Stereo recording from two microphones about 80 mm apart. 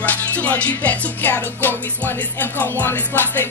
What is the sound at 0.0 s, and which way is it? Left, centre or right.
Music, left.